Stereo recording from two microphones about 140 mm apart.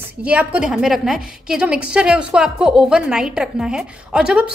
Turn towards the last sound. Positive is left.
turn(degrees=-5)  # may be behind; listen again after turning